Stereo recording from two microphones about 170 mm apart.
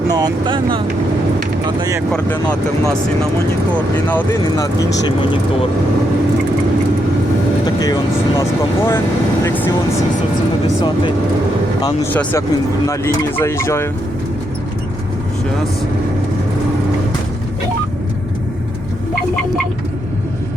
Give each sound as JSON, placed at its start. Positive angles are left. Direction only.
{"t": 0.1, "sound": "speech", "side_deg": -25}
{"t": 1.8, "sound": "speech", "side_deg": -20}
{"t": 4.5, "sound": "speech", "side_deg": 20}
{"t": 7.6, "sound": "vehicle", "side_deg": 25}
{"t": 8.4, "sound": "speech", "side_deg": 15}
{"t": 12.1, "sound": "speech", "side_deg": 15}